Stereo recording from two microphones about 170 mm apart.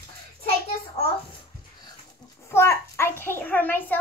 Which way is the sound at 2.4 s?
15° left (ahead or behind).